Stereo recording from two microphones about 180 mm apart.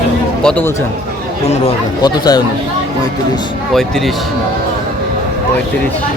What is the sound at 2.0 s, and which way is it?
Speech, 20° left (ahead or behind).